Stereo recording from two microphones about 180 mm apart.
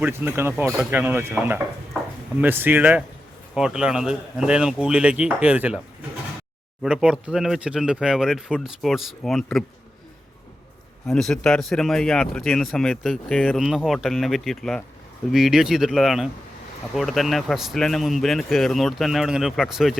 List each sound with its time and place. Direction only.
0.0 s speech: 10° right (ahead or behind)
6.8 s speech: 5° right (ahead or behind)
11.0 s speech: centre (ahead or behind)